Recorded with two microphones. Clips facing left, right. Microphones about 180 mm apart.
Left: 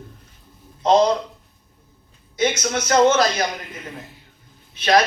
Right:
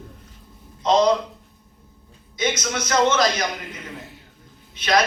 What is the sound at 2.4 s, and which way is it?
A man's voice, 30° left (ahead or behind).